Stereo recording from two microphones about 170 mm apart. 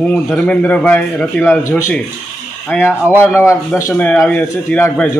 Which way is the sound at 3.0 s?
10° right (ahead or behind).